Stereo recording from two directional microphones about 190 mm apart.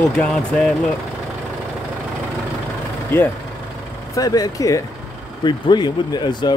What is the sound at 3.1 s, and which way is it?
Speech, 10° left (ahead or behind).